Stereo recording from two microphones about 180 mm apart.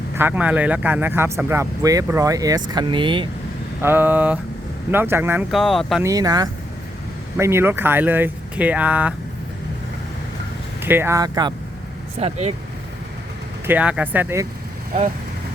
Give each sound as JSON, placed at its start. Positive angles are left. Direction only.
{"t": 0.2, "sound": "speech", "side_deg": -10}
{"t": 3.8, "sound": "speech", "side_deg": -10}
{"t": 5.5, "sound": "speech", "side_deg": 0}
{"t": 6.0, "sound": "speech", "side_deg": -20}
{"t": 10.8, "sound": "speech", "side_deg": -10}
{"t": 12.2, "sound": "speech", "side_deg": -35}
{"t": 13.7, "sound": "speech", "side_deg": -5}